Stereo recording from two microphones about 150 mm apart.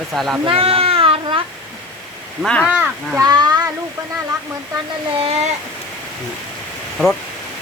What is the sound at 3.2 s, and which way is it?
Speech, 25° right (ahead or behind).